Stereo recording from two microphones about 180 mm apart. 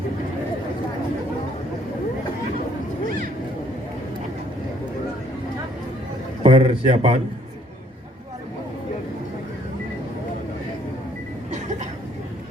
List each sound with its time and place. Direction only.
6.4 s speech: 35° right (ahead or behind)